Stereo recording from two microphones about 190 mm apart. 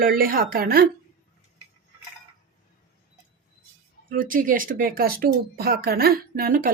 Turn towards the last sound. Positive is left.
turn(degrees=-50)  # may be behind; listen again after turning